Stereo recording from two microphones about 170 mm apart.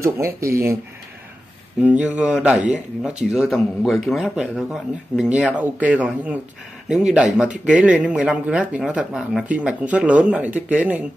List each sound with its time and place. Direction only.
0.0 s speech: 15° right (ahead or behind)
1.8 s speech: 10° right (ahead or behind)